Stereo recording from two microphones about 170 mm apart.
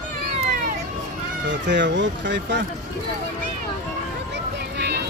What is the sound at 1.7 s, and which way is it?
Speech, 90° right.